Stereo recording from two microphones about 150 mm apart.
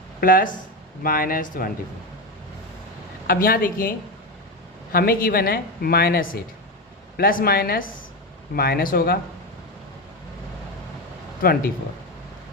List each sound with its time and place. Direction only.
0.2 s speech: 70° left (ahead or behind)
3.2 s speech: 75° left (ahead or behind)